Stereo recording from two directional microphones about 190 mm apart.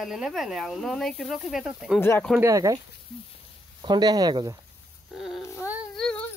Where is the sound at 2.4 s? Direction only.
15° right (ahead or behind).